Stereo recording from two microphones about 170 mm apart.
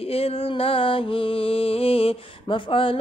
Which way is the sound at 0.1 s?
35° left (ahead or behind).